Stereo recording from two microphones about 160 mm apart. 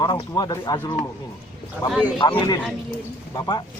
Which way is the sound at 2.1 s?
30° left (ahead or behind).